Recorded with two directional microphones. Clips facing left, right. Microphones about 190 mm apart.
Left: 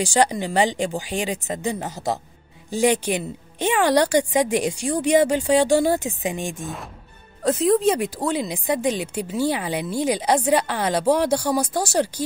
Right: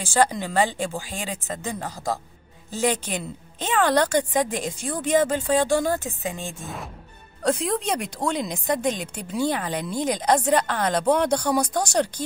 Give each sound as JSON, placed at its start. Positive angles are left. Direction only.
{"t": 0.0, "sound": "a woman's voice", "side_deg": 15}
{"t": 6.6, "sound": "a woman's voice", "side_deg": 0}